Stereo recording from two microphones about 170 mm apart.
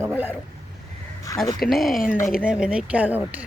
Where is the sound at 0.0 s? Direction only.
10° right (ahead or behind).